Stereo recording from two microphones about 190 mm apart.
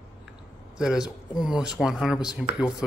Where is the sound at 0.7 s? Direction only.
5° right (ahead or behind).